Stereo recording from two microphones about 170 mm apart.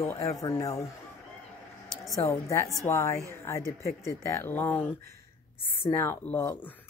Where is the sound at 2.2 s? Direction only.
15° left (ahead or behind).